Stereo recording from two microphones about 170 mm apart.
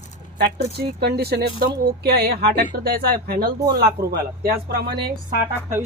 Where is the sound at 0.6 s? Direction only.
70° right (ahead or behind).